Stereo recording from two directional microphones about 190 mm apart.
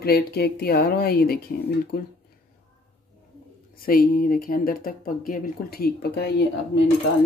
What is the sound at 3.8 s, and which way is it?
Speech, 50° left (ahead or behind).